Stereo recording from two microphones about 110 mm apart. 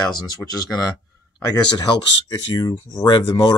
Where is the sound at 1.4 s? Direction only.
35° left (ahead or behind).